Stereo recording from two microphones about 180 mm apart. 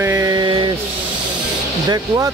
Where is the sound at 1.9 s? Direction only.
20° right (ahead or behind).